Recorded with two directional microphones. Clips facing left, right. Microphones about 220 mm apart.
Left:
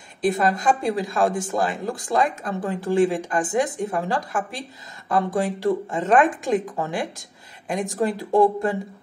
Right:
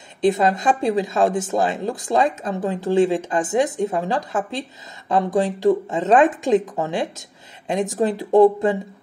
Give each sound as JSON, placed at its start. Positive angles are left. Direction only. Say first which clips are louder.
{"t": 0.2, "sound": "a woman's voice", "louder": "right 3 dB", "side_deg": -20}